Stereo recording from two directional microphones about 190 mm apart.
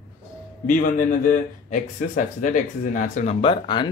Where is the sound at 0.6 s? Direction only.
45° left (ahead or behind).